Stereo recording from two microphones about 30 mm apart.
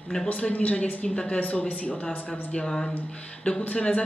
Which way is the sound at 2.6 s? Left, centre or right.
Left.